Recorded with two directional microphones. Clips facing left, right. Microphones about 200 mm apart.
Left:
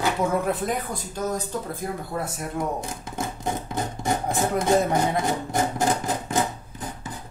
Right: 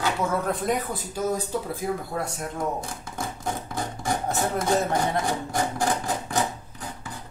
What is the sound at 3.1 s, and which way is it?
Speech, 20° left (ahead or behind).